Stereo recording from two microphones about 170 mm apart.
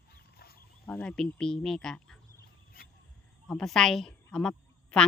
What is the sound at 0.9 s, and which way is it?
Speech, 5° left (ahead or behind).